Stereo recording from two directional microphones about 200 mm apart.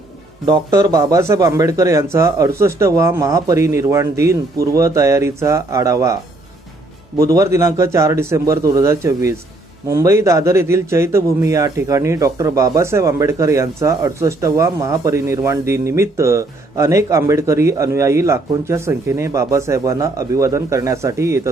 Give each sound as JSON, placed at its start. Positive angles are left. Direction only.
{"t": 0.4, "sound": "speech", "side_deg": -20}
{"t": 7.3, "sound": "speech", "side_deg": -15}